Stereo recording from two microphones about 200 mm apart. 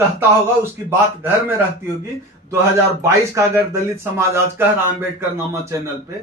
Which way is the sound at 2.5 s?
15° right (ahead or behind).